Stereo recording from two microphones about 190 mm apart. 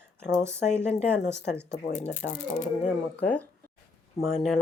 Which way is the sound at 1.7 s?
35° left (ahead or behind).